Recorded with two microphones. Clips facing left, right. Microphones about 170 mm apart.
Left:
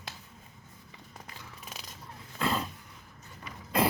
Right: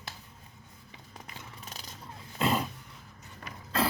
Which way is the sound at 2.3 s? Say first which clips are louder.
Right 3 dB; 20° right (ahead or behind).